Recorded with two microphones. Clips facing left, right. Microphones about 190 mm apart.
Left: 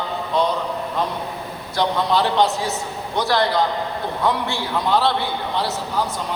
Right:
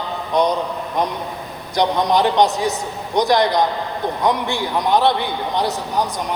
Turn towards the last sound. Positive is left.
turn(degrees=-15)  # may be behind; listen again after turning